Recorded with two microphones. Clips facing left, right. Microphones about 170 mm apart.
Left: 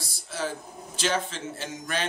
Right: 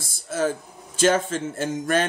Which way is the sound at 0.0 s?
50° right (ahead or behind).